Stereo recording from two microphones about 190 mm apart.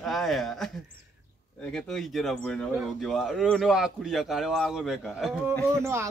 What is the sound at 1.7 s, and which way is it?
Speech, 5° left (ahead or behind).